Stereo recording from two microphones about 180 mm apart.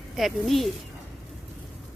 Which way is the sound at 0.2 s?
Centre (ahead or behind).